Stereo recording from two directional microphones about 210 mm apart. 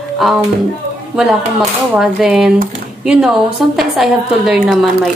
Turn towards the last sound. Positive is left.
turn(degrees=0)  # may be behind; listen again after turning